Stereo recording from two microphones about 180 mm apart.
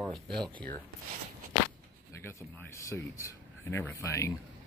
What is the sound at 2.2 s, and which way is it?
A man's voice, 15° left (ahead or behind).